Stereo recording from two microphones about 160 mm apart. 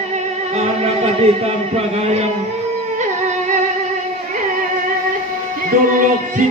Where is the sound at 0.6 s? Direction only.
40° right (ahead or behind).